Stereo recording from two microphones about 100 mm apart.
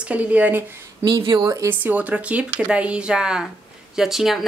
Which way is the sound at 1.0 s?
55° right (ahead or behind).